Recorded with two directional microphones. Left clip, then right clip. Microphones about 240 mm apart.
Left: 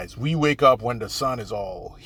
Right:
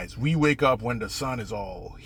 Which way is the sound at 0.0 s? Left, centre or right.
Centre.